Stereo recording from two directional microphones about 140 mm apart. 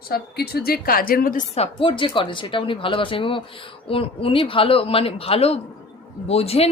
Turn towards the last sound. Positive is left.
turn(degrees=45)  # may be behind; listen again after turning